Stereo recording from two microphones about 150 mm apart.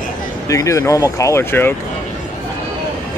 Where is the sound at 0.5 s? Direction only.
20° left (ahead or behind).